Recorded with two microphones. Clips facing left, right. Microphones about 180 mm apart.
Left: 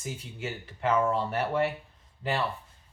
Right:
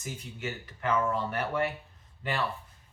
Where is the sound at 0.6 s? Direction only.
25° left (ahead or behind).